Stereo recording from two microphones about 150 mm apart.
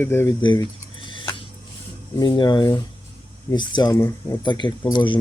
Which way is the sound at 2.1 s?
30° left (ahead or behind).